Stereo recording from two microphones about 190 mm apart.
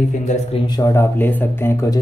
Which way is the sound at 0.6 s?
20° left (ahead or behind).